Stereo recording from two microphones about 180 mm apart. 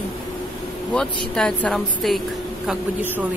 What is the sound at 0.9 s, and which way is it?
A woman's voice, 5° left (ahead or behind).